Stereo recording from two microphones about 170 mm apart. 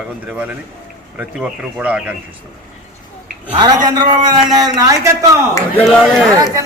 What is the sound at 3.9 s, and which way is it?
A man's voice, 25° right (ahead or behind).